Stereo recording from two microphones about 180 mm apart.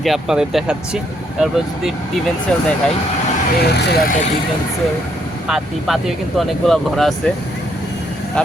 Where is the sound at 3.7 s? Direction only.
60° left (ahead or behind).